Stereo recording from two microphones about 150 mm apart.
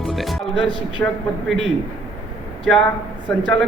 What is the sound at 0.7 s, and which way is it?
Speech, 30° right (ahead or behind).